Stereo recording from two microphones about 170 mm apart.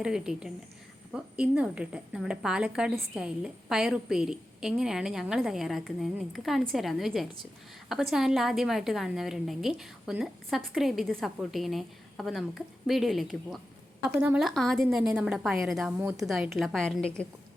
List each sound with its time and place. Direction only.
0.0 s a woman's voice: 5° right (ahead or behind)
15.9 s a woman's voice: 15° right (ahead or behind)
16.2 s a woman's voice: centre (ahead or behind)